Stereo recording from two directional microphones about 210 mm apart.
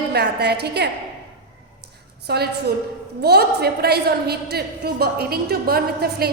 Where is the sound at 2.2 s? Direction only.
50° right (ahead or behind).